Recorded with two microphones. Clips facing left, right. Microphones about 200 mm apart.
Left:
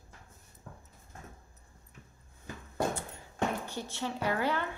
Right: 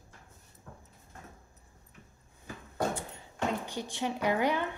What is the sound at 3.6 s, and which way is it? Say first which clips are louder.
A woman's voice: right 2 dB; 15° right (ahead or behind).